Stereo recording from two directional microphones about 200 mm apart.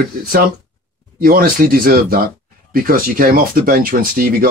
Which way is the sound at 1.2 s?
45° right (ahead or behind).